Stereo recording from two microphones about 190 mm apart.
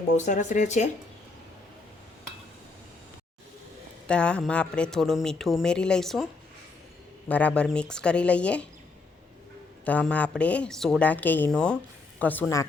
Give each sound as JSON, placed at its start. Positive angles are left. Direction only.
{"t": 0.3, "sound": "speech", "side_deg": 40}
{"t": 4.0, "sound": "speech", "side_deg": 5}
{"t": 7.3, "sound": "speech", "side_deg": 5}
{"t": 9.8, "sound": "a woman's voice", "side_deg": 5}